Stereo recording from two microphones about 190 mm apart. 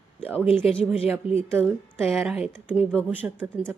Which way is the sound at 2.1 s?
Centre (ahead or behind).